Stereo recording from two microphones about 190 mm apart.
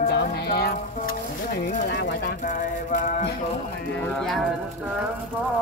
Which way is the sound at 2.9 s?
40° left (ahead or behind).